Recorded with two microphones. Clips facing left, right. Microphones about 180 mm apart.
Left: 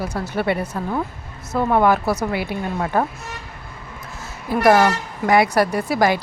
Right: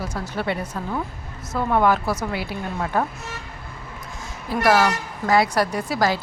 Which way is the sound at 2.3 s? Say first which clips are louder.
Left 4 dB; 55° left (ahead or behind).